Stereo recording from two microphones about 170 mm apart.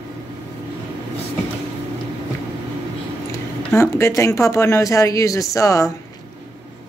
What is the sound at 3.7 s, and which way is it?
Speech, 15° left (ahead or behind).